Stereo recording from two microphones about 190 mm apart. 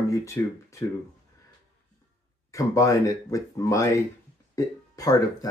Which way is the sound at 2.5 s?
15° left (ahead or behind).